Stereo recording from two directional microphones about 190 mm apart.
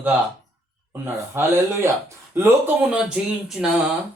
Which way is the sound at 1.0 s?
15° right (ahead or behind).